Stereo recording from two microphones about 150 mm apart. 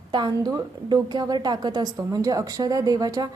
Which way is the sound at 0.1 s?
30° right (ahead or behind).